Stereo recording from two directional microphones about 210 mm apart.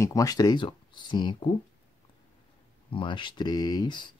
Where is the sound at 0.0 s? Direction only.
15° left (ahead or behind).